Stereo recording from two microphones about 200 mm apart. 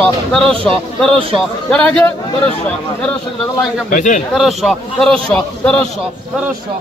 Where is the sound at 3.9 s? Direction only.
40° left (ahead or behind).